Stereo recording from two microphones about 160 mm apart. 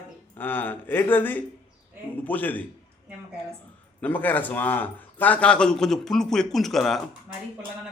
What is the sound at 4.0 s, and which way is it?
A man's voice, 10° left (ahead or behind).